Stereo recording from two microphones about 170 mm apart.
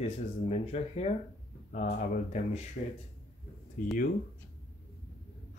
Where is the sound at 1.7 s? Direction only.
50° left (ahead or behind).